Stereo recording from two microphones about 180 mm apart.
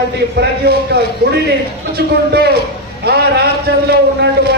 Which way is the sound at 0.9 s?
60° right (ahead or behind).